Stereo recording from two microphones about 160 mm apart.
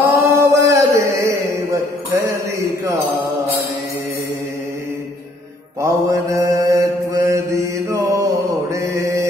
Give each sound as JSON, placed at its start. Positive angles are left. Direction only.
{"t": 0.0, "sound": "chant", "side_deg": -15}
{"t": 5.8, "sound": "mantra", "side_deg": -20}